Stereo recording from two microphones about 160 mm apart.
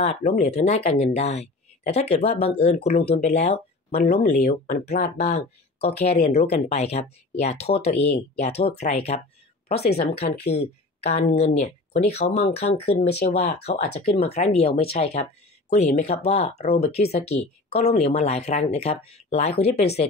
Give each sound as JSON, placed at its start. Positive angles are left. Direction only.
{"t": 0.0, "sound": "speech", "side_deg": 40}
{"t": 3.9, "sound": "speech", "side_deg": 80}
{"t": 4.3, "sound": "speech", "side_deg": 50}
{"t": 9.8, "sound": "speech", "side_deg": 90}
{"t": 10.5, "sound": "speech", "side_deg": 40}